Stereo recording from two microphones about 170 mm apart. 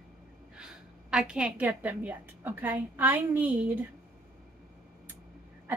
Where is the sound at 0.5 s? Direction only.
5° right (ahead or behind).